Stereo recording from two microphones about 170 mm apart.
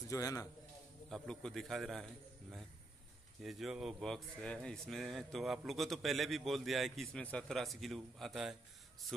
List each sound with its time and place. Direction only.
0.1 s a man's voice: 20° left (ahead or behind)
1.1 s speech: 5° left (ahead or behind)
3.4 s speech: centre (ahead or behind)